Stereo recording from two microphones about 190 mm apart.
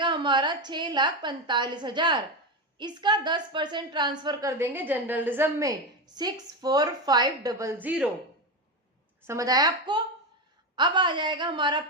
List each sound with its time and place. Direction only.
0.0 s a woman's voice: 25° right (ahead or behind); by 8.1 s 10° right (ahead or behind)
9.2 s a woman's voice: 15° right (ahead or behind)